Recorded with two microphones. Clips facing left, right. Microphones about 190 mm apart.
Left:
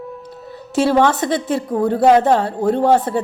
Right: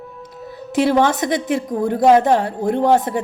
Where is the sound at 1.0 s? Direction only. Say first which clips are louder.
Left 1 dB; 15° right (ahead or behind).